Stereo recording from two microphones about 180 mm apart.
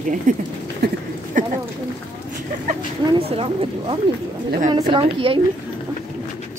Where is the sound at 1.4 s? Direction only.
45° right (ahead or behind).